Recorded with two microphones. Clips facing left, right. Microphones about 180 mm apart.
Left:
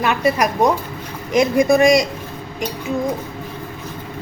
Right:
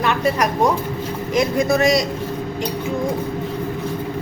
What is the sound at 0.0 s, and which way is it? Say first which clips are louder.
A woman's voice: left 1 dB; 10° left (ahead or behind).